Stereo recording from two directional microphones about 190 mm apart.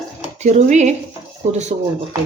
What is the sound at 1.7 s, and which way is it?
Speech, 25° right (ahead or behind).